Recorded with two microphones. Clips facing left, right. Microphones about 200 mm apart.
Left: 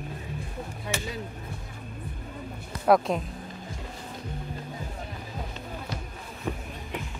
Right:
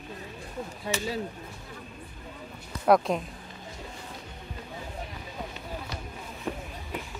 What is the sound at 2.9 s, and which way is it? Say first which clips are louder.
Speech: even; centre (ahead or behind).